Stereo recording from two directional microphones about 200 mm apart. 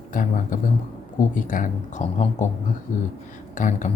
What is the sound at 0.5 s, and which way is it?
A man's voice, 40° left (ahead or behind).